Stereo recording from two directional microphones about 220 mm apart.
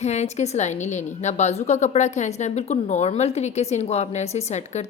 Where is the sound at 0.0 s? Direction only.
30° left (ahead or behind).